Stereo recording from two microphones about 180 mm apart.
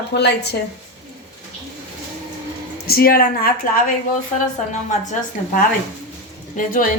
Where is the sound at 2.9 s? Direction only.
55° left (ahead or behind).